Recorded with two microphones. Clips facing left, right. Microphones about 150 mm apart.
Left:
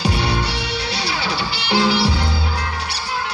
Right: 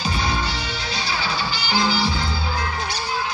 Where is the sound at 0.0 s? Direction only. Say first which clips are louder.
Left 3 dB; 75° left (ahead or behind).